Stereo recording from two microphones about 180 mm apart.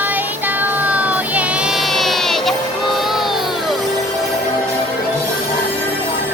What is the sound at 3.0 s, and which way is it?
Music, centre (ahead or behind).